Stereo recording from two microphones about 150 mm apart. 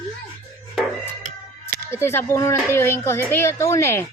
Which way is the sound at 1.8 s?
15° left (ahead or behind).